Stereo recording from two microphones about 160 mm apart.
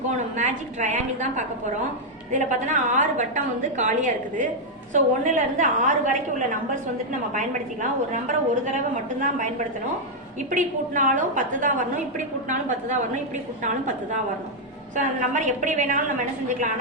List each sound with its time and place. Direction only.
0.1 s a woman's voice: 50° right (ahead or behind)
10.5 s a woman's voice: 55° right (ahead or behind)